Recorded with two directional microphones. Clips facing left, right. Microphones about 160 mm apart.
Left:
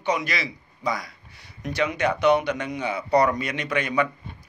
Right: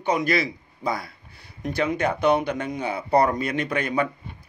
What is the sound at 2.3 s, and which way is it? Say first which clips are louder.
Speech: even; 50° right (ahead or behind).